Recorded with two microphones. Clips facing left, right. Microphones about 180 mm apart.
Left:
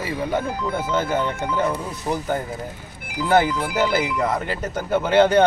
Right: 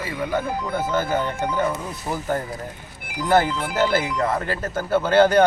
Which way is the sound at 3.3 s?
15° left (ahead or behind).